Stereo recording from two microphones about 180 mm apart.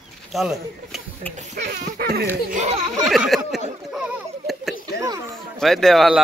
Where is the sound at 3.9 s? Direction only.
Centre (ahead or behind).